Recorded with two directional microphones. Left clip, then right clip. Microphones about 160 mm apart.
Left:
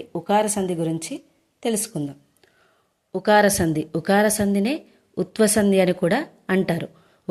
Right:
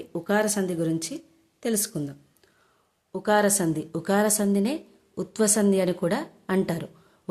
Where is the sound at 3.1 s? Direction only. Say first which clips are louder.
Left 5 dB; 20° left (ahead or behind).